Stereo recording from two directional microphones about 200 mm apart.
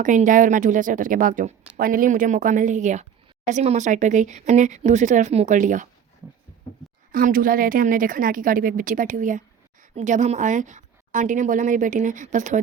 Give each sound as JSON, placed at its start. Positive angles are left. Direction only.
{"t": 0.0, "sound": "a woman's voice", "side_deg": -40}
{"t": 7.1, "sound": "a woman's voice", "side_deg": -45}